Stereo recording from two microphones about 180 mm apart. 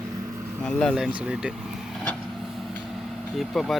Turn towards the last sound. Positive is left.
turn(degrees=0)  # may be behind; listen again after turning